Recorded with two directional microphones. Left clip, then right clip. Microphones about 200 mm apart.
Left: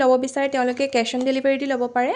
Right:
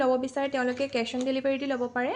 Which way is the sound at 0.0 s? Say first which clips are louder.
Left 8 dB; 35° left (ahead or behind).